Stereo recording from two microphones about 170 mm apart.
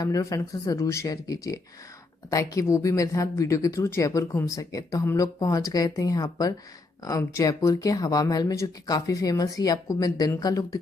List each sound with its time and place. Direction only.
0.0 s speech: 20° left (ahead or behind)